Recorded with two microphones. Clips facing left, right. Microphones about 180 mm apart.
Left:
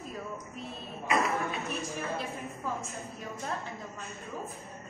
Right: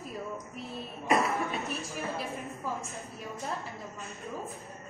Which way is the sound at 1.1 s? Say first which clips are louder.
Right 2 dB; centre (ahead or behind).